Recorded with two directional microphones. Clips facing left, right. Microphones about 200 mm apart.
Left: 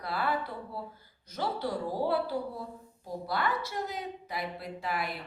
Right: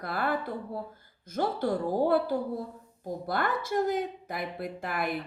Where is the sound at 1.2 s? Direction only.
50° right (ahead or behind).